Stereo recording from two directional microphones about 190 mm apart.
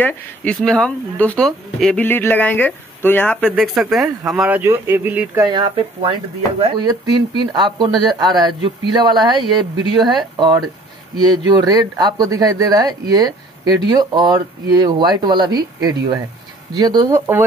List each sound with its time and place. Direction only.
0.0 s speech: 5° left (ahead or behind); by 10.1 s 25° right (ahead or behind)
11.1 s speech: 20° right (ahead or behind)